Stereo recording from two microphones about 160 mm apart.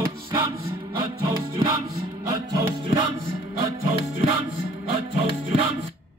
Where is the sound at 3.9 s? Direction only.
35° right (ahead or behind).